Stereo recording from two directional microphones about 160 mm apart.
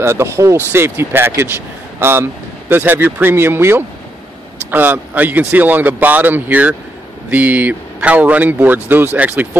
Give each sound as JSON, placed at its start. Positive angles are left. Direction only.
{"t": 0.0, "sound": "speech", "side_deg": -15}